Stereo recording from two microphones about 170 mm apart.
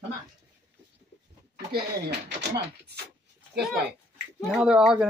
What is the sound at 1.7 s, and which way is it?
Speech, 65° right (ahead or behind).